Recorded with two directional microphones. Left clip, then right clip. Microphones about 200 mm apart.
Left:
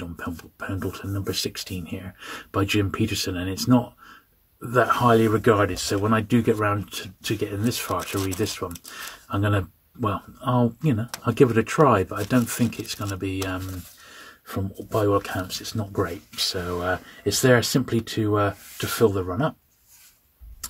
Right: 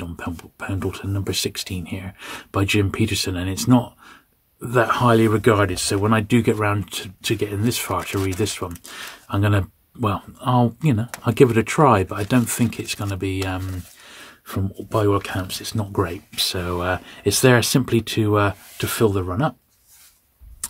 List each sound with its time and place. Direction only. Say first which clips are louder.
0.0 s speech: right 2 dB; 25° right (ahead or behind)